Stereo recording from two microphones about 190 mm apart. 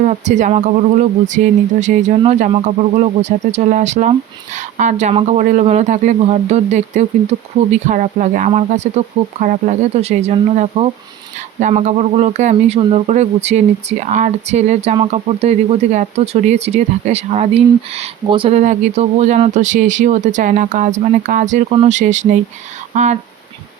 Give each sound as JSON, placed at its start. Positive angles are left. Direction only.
{"t": 0.0, "sound": "speech", "side_deg": -40}